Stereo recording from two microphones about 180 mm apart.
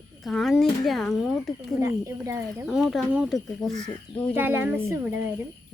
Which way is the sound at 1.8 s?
15° right (ahead or behind).